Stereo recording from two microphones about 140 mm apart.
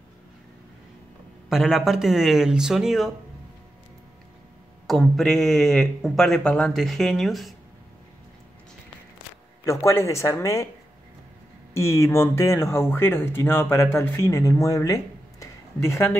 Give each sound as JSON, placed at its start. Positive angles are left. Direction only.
{"t": 1.5, "sound": "speech", "side_deg": 0}
{"t": 4.8, "sound": "speech", "side_deg": 0}
{"t": 9.7, "sound": "speech", "side_deg": 20}
{"t": 11.7, "sound": "speech", "side_deg": 20}